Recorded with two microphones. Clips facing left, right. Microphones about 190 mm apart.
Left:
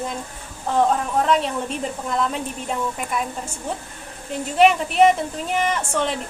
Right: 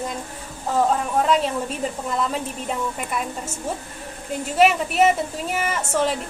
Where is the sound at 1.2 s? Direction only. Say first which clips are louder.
Even; centre (ahead or behind).